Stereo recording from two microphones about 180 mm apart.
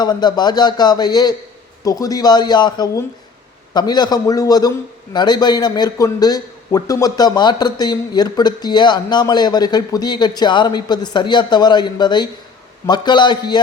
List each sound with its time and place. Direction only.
0.0 s a man's voice: 25° left (ahead or behind)